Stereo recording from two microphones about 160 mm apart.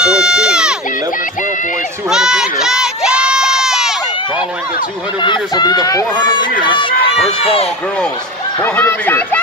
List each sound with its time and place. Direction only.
0.0 s crowd: 5° right (ahead or behind)
2.0 s crowd: 5° right (ahead or behind)
5.2 s speech: 25° left (ahead or behind)
8.5 s speech: 15° left (ahead or behind)